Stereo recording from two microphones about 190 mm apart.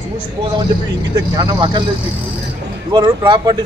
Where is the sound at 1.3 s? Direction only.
25° right (ahead or behind).